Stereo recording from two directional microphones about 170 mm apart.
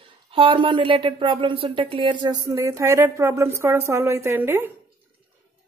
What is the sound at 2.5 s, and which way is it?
A woman's voice, 15° right (ahead or behind).